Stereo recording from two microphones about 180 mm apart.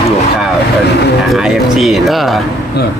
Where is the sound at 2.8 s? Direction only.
65° left (ahead or behind).